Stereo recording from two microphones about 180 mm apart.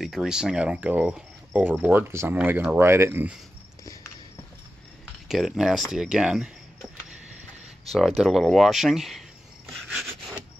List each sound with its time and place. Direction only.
0.0 s speech: centre (ahead or behind)
3.8 s cricket: 20° left (ahead or behind)
5.3 s speech: centre (ahead or behind)
7.9 s speech: centre (ahead or behind)
9.8 s rub: 5° right (ahead or behind)